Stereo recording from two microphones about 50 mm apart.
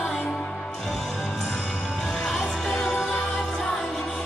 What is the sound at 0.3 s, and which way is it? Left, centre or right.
Music, centre.